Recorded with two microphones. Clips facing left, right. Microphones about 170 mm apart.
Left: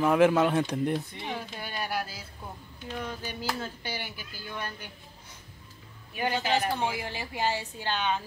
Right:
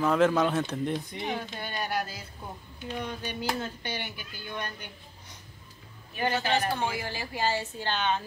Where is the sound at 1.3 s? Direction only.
5° left (ahead or behind).